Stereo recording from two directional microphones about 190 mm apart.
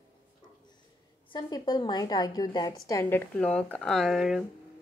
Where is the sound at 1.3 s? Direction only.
25° left (ahead or behind); by 4.4 s centre (ahead or behind).